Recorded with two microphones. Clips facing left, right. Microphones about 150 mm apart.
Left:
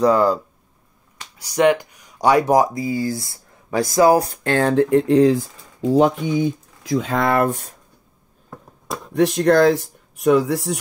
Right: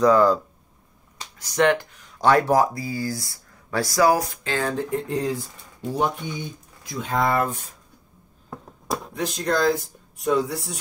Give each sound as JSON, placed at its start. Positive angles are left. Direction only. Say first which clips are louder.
{"t": 0.0, "sound": "speech", "louder": "left 1 dB", "side_deg": 5}
{"t": 1.4, "sound": "speech", "louder": "left 4 dB", "side_deg": 10}
{"t": 4.2, "sound": "speech", "louder": "left 7 dB", "side_deg": 55}
{"t": 9.1, "sound": "speech", "louder": "left 11 dB", "side_deg": 60}